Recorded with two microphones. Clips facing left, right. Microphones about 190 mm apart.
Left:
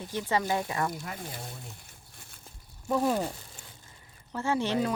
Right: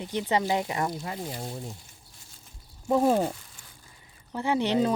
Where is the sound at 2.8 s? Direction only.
30° right (ahead or behind).